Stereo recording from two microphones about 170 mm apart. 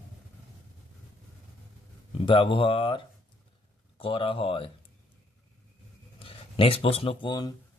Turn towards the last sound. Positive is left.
turn(degrees=25)  # may be behind; listen again after turning